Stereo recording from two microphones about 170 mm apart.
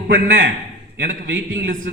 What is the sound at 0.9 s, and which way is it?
Speech, 90° right.